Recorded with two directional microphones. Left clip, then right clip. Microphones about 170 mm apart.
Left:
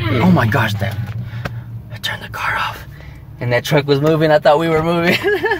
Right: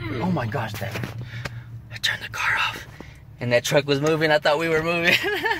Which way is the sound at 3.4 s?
25° right (ahead or behind).